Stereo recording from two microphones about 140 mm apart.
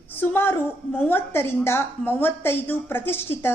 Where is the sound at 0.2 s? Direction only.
15° left (ahead or behind).